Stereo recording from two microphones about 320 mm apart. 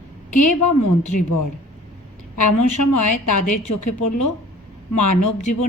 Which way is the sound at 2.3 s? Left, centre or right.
Left.